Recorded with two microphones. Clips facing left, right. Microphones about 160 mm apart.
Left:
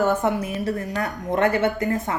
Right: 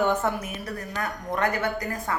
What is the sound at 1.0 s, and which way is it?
Speech, 25° left (ahead or behind).